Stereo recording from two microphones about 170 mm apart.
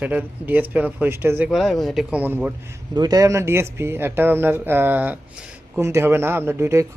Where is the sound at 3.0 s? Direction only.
20° right (ahead or behind).